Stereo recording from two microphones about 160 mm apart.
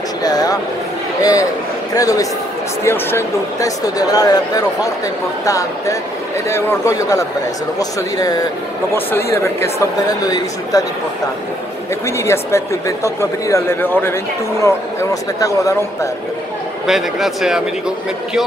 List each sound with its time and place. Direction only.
0.2 s speech: 25° left (ahead or behind)
8.9 s speech: 15° left (ahead or behind)
12.2 s a man's voice: 15° left (ahead or behind)
16.8 s speech: centre (ahead or behind)